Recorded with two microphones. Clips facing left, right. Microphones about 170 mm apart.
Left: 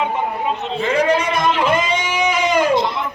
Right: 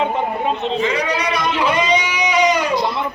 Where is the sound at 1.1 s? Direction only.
50° left (ahead or behind).